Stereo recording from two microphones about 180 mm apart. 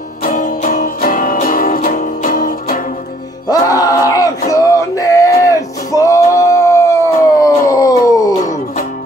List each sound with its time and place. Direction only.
0.2 s music: 45° left (ahead or behind)
3.4 s a sound: 20° left (ahead or behind)
4.5 s music: 20° left (ahead or behind)